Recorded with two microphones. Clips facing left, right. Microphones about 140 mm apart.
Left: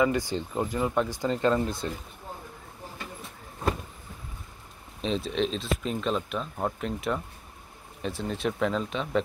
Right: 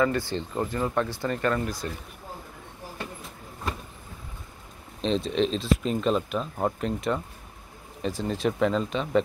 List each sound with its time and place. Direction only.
0.0 s speech: 15° left (ahead or behind)
5.0 s speech: 5° left (ahead or behind)